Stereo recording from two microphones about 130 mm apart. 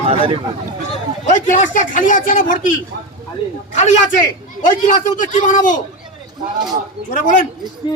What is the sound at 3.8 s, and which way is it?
Speech, 70° left (ahead or behind).